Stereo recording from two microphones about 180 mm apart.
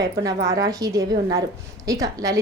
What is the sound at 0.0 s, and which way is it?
A woman's voice, 20° right (ahead or behind).